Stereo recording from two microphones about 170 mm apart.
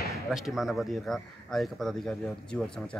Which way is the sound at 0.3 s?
Centre (ahead or behind).